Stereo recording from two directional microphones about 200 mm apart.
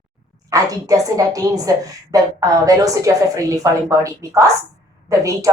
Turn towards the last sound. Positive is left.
turn(degrees=-15)  # may be behind; listen again after turning